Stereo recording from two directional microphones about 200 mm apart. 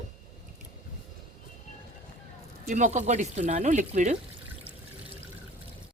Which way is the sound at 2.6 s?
35° right (ahead or behind).